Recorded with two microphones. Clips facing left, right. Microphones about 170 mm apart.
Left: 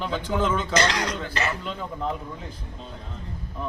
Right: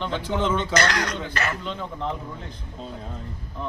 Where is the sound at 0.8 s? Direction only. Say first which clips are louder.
Even; 25° left (ahead or behind).